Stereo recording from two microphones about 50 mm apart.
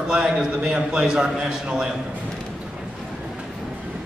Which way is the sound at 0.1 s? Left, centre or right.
Centre.